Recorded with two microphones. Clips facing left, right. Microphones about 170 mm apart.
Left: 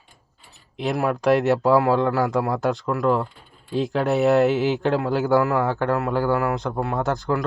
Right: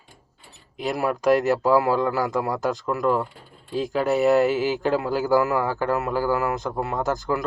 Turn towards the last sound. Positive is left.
turn(degrees=0)  # may be behind; listen again after turning